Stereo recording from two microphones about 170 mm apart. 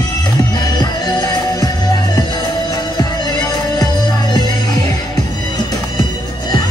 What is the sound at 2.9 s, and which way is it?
Music, 25° left (ahead or behind).